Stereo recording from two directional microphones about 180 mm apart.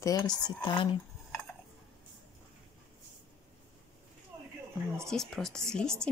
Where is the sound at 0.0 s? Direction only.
20° left (ahead or behind).